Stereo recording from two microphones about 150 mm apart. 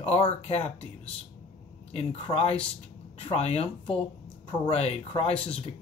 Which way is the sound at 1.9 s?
40° left (ahead or behind).